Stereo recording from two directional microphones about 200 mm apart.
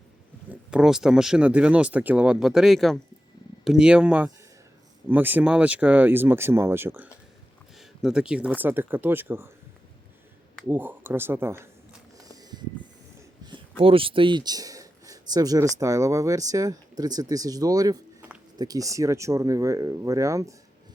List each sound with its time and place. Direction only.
0.7 s speech: 5° right (ahead or behind)
10.7 s speech: 10° right (ahead or behind)
12.1 s a sound: 15° right (ahead or behind)
13.1 s speech: 20° right (ahead or behind)